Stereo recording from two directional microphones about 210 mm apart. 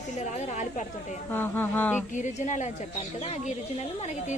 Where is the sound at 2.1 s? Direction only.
35° left (ahead or behind).